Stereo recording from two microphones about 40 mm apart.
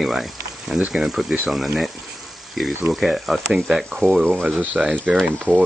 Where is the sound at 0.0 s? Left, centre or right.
Centre.